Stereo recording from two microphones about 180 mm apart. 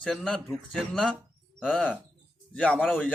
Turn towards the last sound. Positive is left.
turn(degrees=5)  # may be behind; listen again after turning